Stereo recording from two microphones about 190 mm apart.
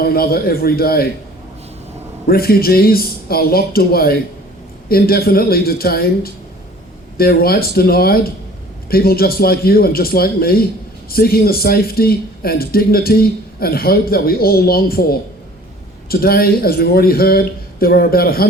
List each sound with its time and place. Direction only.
0.0 s a man's voice: 55° left (ahead or behind)
2.2 s a man's voice: 55° left (ahead or behind)